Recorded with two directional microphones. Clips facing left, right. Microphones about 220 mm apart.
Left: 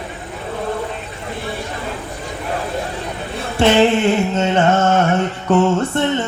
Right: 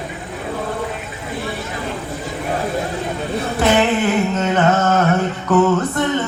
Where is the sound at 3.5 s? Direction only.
30° left (ahead or behind).